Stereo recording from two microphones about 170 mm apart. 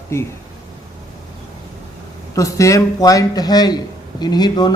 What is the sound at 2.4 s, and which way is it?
A man's voice, 20° left (ahead or behind).